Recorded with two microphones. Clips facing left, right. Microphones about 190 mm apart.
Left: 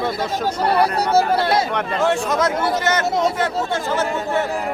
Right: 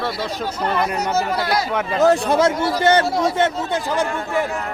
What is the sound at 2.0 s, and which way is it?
Speech, 35° right (ahead or behind).